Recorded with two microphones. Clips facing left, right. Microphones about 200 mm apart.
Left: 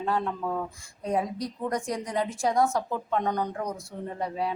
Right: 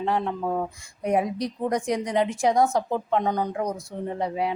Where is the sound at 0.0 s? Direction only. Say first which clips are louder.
Right 3 dB; 20° right (ahead or behind).